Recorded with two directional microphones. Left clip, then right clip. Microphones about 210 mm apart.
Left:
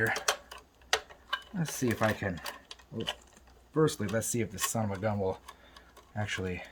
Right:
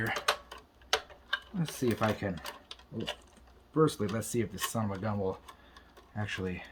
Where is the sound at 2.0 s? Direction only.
35° left (ahead or behind).